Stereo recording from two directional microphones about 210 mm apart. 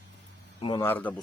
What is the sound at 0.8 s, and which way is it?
Speech, 10° left (ahead or behind).